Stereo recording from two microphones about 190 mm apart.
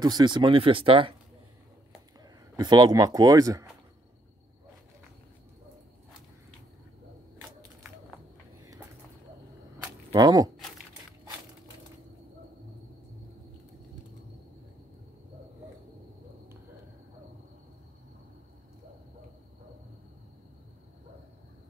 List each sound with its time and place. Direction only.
0.0 s speech: 20° right (ahead or behind)
2.5 s speech: 20° right (ahead or behind)
10.1 s speech: 20° right (ahead or behind)